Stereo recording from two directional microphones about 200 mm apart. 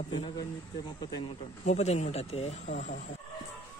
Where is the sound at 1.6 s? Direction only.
35° left (ahead or behind).